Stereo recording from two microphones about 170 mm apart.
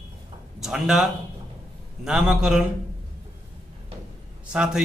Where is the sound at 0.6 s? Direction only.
Centre (ahead or behind).